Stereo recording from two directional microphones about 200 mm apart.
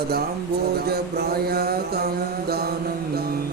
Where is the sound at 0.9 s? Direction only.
50° right (ahead or behind).